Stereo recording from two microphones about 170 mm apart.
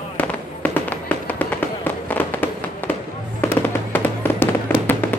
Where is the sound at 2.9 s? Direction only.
10° left (ahead or behind).